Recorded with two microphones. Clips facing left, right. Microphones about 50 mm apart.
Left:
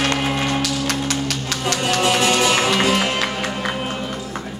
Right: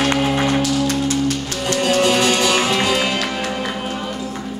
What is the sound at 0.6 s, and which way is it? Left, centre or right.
Music, left.